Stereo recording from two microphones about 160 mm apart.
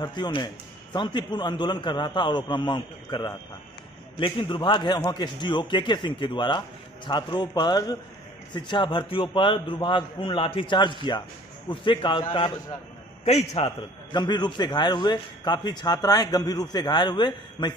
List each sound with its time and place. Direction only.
0.0 s a man's voice: 30° left (ahead or behind)
13.2 s a man's voice: 45° left (ahead or behind)
14.1 s a man's voice: 25° left (ahead or behind)